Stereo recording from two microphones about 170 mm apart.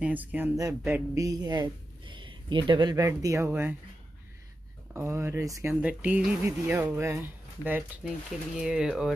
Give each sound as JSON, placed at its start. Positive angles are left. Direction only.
{"t": 0.0, "sound": "speech", "side_deg": -10}
{"t": 4.9, "sound": "speech", "side_deg": -15}